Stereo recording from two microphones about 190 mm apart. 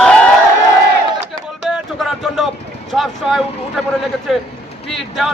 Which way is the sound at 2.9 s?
Centre (ahead or behind).